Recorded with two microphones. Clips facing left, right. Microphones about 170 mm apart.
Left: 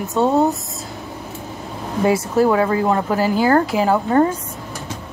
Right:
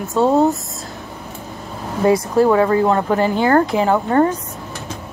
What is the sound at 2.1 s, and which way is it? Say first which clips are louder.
A woman's voice: right 2 dB; 5° left (ahead or behind).